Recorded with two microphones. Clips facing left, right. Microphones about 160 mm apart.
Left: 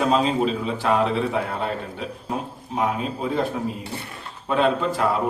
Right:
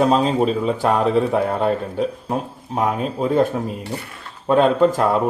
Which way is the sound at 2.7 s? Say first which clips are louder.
Right 3 dB; 45° right (ahead or behind).